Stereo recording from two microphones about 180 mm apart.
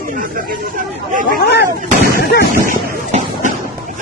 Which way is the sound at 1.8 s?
50° right (ahead or behind).